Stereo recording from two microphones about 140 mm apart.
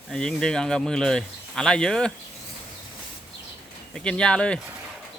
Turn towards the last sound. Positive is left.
turn(degrees=5)  # may be behind; listen again after turning